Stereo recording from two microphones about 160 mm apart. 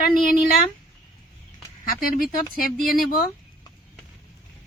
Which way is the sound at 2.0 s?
60° left (ahead or behind).